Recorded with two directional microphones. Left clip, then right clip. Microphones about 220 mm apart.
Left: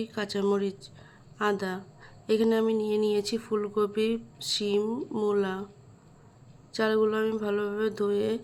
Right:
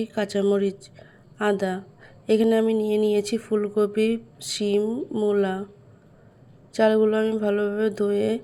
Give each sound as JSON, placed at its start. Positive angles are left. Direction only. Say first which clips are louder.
{"t": 0.0, "sound": "a woman's voice", "louder": "right 6 dB", "side_deg": -10}
{"t": 6.7, "sound": "a woman's voice", "louder": "right 6 dB", "side_deg": -10}